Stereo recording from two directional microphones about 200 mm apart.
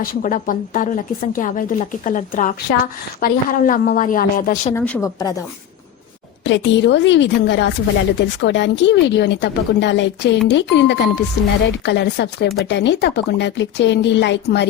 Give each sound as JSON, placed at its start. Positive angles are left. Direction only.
{"t": 0.0, "sound": "a woman's voice", "side_deg": 45}
{"t": 4.7, "sound": "speech", "side_deg": 10}
{"t": 6.4, "sound": "a woman's voice", "side_deg": 65}